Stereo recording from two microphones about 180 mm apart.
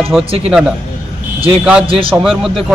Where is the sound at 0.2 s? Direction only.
30° right (ahead or behind).